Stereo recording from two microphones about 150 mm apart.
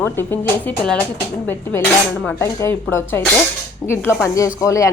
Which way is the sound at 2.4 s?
15° left (ahead or behind).